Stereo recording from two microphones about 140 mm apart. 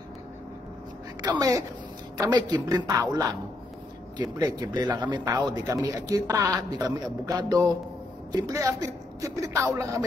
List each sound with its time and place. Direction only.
1.2 s a man's voice: 25° right (ahead or behind)